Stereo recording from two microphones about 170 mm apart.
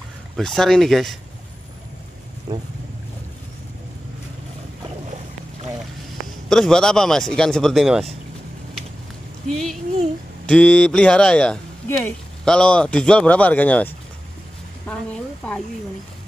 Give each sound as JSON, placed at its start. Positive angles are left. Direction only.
{"t": 0.4, "sound": "speech", "side_deg": 0}
{"t": 2.5, "sound": "speech", "side_deg": -25}
{"t": 6.5, "sound": "speech", "side_deg": 5}
{"t": 10.4, "sound": "speech", "side_deg": 5}